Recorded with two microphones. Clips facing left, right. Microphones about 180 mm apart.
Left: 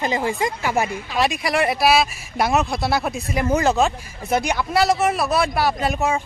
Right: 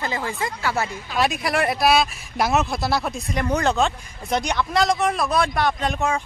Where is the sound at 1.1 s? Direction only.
Centre (ahead or behind).